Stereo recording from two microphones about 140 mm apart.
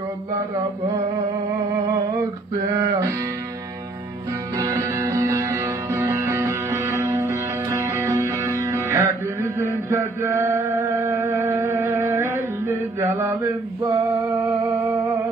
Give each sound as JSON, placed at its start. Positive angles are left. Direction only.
{"t": 2.7, "sound": "music", "side_deg": -20}
{"t": 4.6, "sound": "music", "side_deg": -25}